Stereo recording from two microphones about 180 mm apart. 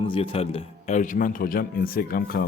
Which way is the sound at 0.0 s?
30° left (ahead or behind).